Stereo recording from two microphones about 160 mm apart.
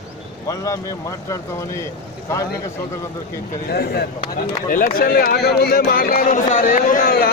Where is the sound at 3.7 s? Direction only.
80° left.